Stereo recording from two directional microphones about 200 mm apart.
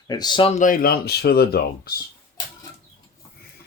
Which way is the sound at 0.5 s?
40° left (ahead or behind).